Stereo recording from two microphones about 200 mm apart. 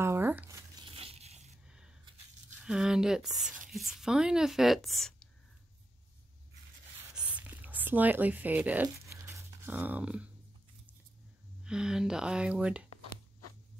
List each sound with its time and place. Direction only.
0.0 s tearing: 10° right (ahead or behind)
0.8 s crushing: 30° right (ahead or behind)
2.6 s a woman's voice: 5° right (ahead or behind)
7.0 s writing: 5° right (ahead or behind)
8.8 s a sound: 15° right (ahead or behind)
11.6 s a woman's voice: 5° right (ahead or behind)